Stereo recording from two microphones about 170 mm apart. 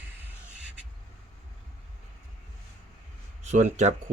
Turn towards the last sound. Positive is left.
turn(degrees=-45)  # may be behind; listen again after turning